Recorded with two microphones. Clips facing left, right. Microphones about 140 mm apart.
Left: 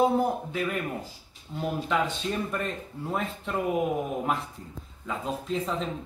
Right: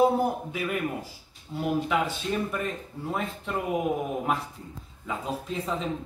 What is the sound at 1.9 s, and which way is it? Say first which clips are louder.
Speech: even; 10° right (ahead or behind).